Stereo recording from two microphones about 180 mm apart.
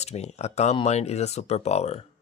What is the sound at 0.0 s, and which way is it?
Speech, 35° left (ahead or behind).